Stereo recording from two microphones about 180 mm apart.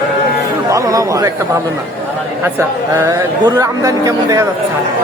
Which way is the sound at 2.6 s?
15° right (ahead or behind).